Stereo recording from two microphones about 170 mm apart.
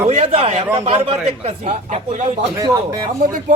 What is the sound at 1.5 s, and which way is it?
Speech, 45° right (ahead or behind).